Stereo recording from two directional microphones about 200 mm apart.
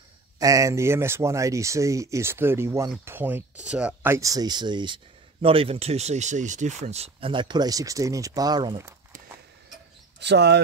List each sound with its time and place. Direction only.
0.4 s speech: 15° right (ahead or behind)
10.2 s speech: 60° right (ahead or behind)